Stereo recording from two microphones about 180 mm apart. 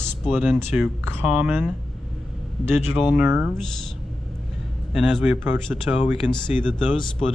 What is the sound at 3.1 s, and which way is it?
Speech, 5° right (ahead or behind).